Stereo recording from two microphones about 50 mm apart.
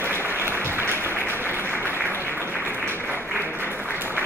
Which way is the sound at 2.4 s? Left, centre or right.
Left.